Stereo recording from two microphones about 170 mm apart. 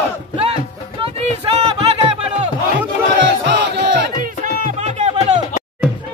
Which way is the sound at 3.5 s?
90° right.